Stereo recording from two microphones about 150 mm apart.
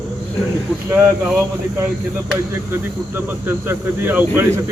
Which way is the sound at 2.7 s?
15° right (ahead or behind).